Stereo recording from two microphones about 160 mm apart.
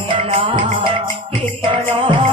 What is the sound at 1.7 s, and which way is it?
Music, 30° right (ahead or behind).